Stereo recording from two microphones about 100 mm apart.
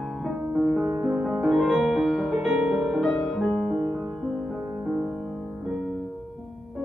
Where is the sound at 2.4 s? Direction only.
10° right (ahead or behind).